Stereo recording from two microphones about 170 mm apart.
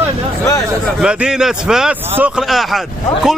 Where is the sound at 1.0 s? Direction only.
5° right (ahead or behind).